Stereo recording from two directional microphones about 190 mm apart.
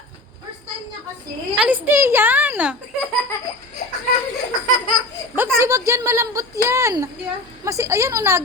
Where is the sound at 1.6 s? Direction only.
10° right (ahead or behind).